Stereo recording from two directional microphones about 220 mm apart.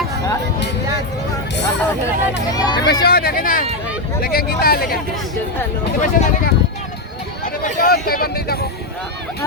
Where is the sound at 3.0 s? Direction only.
45° left (ahead or behind).